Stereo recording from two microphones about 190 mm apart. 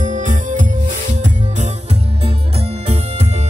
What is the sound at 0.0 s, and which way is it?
Music, 40° right (ahead or behind).